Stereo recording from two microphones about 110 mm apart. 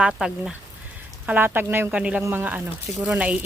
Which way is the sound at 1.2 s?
15° right (ahead or behind).